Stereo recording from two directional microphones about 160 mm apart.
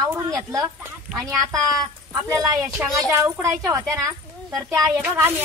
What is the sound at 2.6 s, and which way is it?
Speech, centre (ahead or behind).